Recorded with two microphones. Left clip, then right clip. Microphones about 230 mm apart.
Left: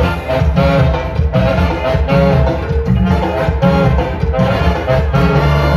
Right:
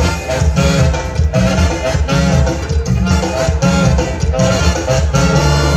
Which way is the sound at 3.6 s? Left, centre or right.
Left.